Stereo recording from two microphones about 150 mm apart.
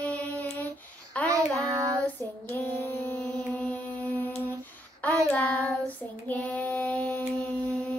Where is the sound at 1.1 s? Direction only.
10° left (ahead or behind).